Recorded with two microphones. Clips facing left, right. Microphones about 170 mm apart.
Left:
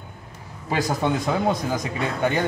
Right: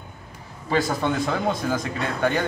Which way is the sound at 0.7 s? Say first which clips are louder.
Even; 15° left (ahead or behind).